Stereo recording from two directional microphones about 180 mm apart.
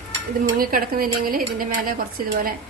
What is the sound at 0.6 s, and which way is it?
Speech, 50° right (ahead or behind).